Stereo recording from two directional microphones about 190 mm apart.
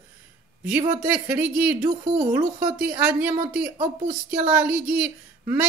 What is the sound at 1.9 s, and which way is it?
Speech, 30° right (ahead or behind).